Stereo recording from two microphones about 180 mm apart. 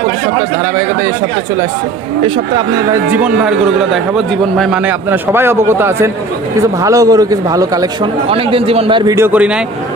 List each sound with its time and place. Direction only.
2.9 s a man's voice: 10° right (ahead or behind)
4.9 s a man's voice: 10° right (ahead or behind)
8.3 s a man's voice: 30° right (ahead or behind); by 9.5 s 10° right (ahead or behind)